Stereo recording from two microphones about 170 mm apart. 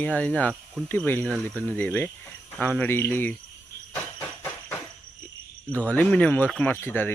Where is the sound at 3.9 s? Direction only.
10° left (ahead or behind).